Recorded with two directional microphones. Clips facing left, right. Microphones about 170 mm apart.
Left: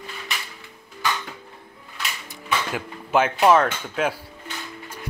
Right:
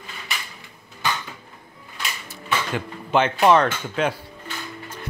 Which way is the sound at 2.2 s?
5° left (ahead or behind).